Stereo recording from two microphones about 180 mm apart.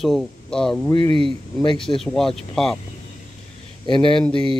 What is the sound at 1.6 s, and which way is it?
Speech, 30° left (ahead or behind).